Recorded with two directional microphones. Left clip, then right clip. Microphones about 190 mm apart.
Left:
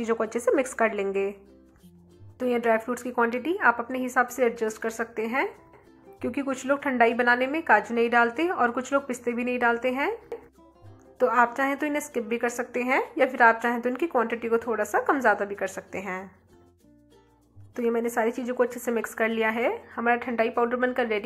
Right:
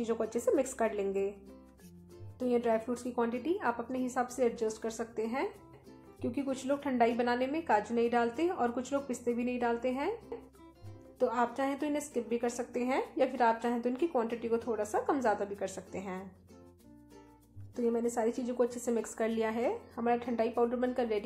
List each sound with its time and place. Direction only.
0.0 s a woman's voice: 15° left (ahead or behind)
2.3 s a woman's voice: 15° left (ahead or behind)
11.1 s a woman's voice: 15° left (ahead or behind)
17.7 s a woman's voice: 15° left (ahead or behind)